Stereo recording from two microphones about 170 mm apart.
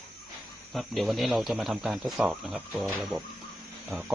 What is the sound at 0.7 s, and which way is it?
Speech, centre (ahead or behind).